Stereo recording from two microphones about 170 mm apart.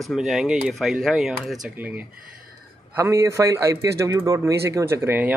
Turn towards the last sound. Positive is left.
turn(degrees=-10)  # may be behind; listen again after turning